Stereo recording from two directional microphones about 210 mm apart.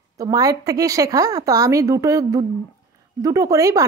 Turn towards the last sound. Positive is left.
turn(degrees=-15)  # may be behind; listen again after turning